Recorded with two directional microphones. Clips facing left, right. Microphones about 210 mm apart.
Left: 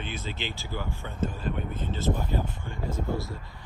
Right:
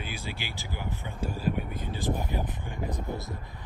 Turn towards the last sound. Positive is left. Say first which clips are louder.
# left 3 dB
turn(degrees=-20)  # may be behind; listen again after turning